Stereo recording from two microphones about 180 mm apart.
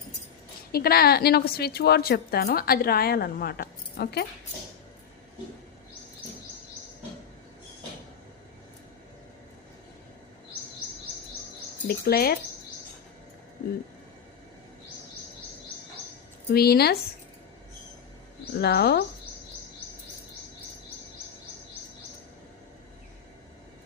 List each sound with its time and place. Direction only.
0.7 s a woman's voice: 60° left (ahead or behind)
11.9 s a woman's voice: 60° left (ahead or behind)
16.5 s a woman's voice: 60° left (ahead or behind)
18.6 s a woman's voice: 65° left (ahead or behind)